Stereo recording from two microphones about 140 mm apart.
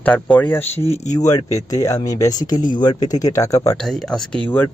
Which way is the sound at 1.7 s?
25° left (ahead or behind).